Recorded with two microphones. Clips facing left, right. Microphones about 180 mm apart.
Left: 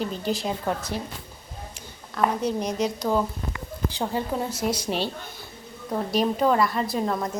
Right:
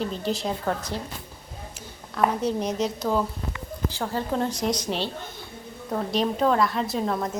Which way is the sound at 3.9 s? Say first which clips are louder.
Even; 15° left (ahead or behind).